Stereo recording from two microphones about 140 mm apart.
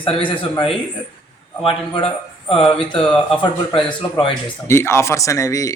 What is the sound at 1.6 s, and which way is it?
Speech, 40° left (ahead or behind).